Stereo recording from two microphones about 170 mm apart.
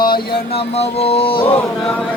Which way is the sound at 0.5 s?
40° left (ahead or behind).